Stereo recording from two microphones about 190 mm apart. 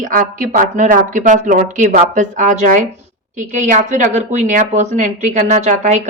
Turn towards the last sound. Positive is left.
turn(degrees=-40)  # may be behind; listen again after turning